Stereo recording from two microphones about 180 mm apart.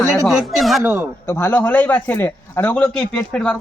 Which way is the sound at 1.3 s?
10° left (ahead or behind).